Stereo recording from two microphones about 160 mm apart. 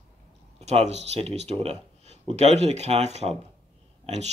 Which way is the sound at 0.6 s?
45° right (ahead or behind).